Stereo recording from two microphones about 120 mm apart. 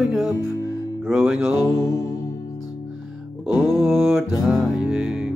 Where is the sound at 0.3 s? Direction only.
30° left (ahead or behind).